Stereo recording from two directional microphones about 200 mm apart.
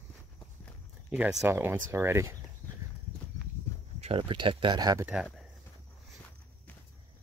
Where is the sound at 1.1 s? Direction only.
10° right (ahead or behind).